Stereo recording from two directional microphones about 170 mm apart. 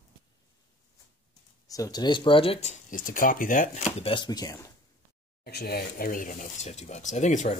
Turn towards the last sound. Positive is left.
turn(degrees=45)  # may be behind; listen again after turning